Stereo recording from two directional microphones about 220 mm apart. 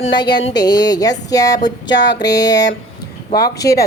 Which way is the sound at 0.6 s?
15° left (ahead or behind).